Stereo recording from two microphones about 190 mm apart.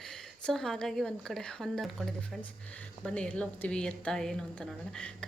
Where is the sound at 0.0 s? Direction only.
Centre (ahead or behind).